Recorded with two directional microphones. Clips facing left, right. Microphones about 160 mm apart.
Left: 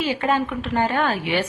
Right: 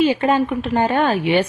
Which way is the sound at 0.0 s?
20° right (ahead or behind).